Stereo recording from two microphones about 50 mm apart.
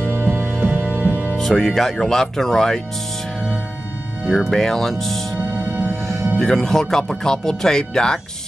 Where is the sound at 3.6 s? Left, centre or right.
Left.